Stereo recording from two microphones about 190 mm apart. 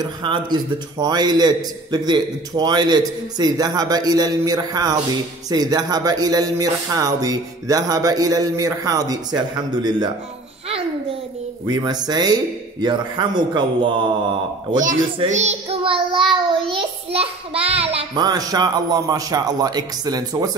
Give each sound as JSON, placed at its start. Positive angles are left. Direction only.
{"t": 0.0, "sound": "a man's voice", "side_deg": -25}
{"t": 11.6, "sound": "a man's voice", "side_deg": -20}
{"t": 15.2, "sound": "child singing", "side_deg": -40}
{"t": 17.1, "sound": "a man's voice", "side_deg": -30}